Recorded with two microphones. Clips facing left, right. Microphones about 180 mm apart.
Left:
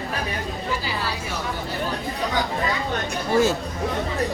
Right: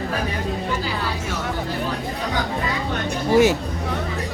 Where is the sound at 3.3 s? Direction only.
15° right (ahead or behind).